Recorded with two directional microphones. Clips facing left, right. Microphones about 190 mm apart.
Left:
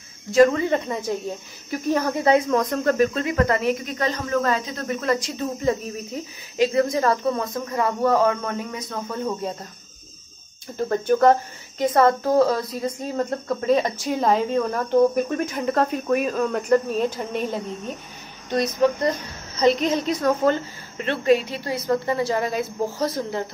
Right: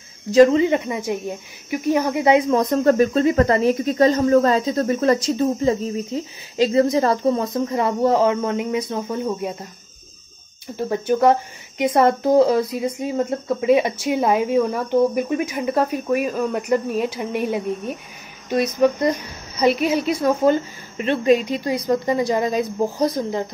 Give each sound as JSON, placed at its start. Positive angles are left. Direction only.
{"t": 0.3, "sound": "a woman's voice", "side_deg": -20}
{"t": 2.5, "sound": "speech", "side_deg": -25}
{"t": 10.8, "sound": "a woman's voice", "side_deg": -10}